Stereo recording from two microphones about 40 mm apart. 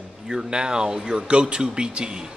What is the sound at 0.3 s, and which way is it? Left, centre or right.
Speech, centre.